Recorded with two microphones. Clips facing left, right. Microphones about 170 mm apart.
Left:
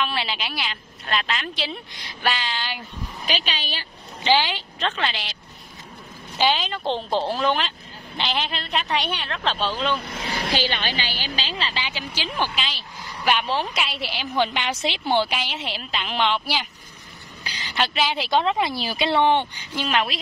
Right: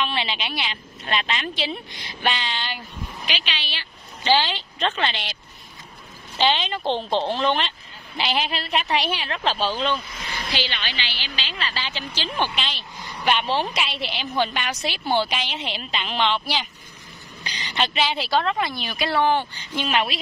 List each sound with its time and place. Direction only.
0.0 s a woman's voice: 5° left (ahead or behind)
3.3 s a woman's voice: 45° left (ahead or behind)
4.2 s a woman's voice: 15° left (ahead or behind)
4.7 s a woman's voice: centre (ahead or behind)
10.5 s a woman's voice: 45° left (ahead or behind)
11.5 s a sound: 30° left (ahead or behind)
11.8 s a woman's voice: 10° left (ahead or behind)
14.4 s a woman's voice: 20° left (ahead or behind)
15.1 s a woman's voice: 10° left (ahead or behind)
19.5 s speech: 10° left (ahead or behind)
19.8 s a woman's voice: centre (ahead or behind)